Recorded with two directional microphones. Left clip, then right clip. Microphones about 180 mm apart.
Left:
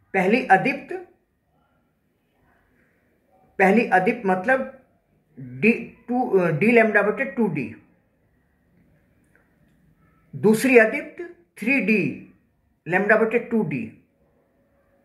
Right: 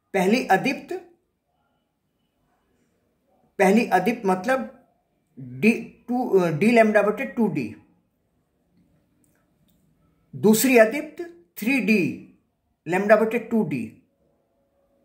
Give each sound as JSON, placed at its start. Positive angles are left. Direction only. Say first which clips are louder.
{"t": 0.1, "sound": "speech", "louder": "left 2 dB", "side_deg": -30}
{"t": 3.5, "sound": "speech", "louder": "left 1 dB", "side_deg": -30}
{"t": 5.6, "sound": "speech", "louder": "left 2 dB", "side_deg": -30}
{"t": 10.4, "sound": "speech", "louder": "left 1 dB", "side_deg": -30}